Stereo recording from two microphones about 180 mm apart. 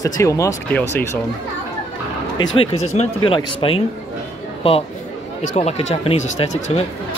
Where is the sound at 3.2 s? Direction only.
25° left (ahead or behind).